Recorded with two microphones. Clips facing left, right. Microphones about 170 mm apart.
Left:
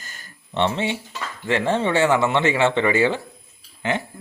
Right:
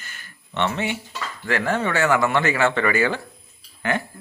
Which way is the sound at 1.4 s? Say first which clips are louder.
Left 2 dB; 25° left (ahead or behind).